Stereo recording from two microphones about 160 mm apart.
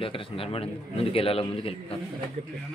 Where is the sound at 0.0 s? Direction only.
35° left (ahead or behind).